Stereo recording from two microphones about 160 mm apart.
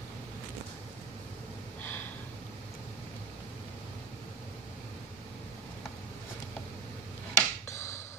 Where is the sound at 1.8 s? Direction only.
10° left (ahead or behind).